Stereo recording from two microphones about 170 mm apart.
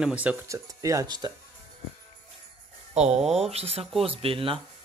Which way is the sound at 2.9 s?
40° right (ahead or behind).